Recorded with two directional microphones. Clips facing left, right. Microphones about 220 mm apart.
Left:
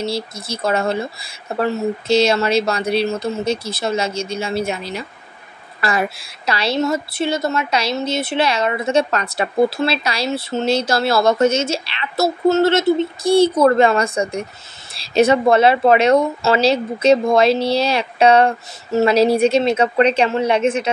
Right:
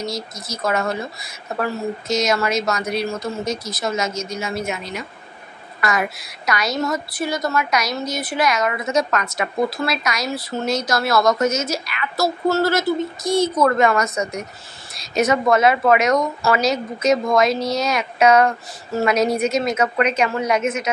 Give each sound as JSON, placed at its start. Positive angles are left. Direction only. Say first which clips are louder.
{"t": 0.0, "sound": "a woman's voice", "louder": "left 4 dB", "side_deg": 30}